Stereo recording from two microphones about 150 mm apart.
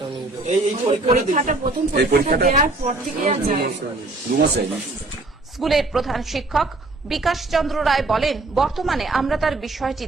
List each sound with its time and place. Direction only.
0.4 s a man's voice: 40° right (ahead or behind)
2.0 s a woman's voice: 90° right; by 3.7 s 65° right (ahead or behind)
5.5 s a woman's voice: centre (ahead or behind)